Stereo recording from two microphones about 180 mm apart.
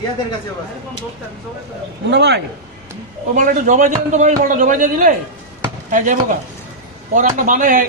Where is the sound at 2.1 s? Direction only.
65° right (ahead or behind).